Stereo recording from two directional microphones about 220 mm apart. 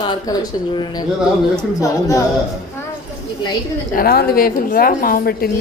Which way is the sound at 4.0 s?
45° left (ahead or behind).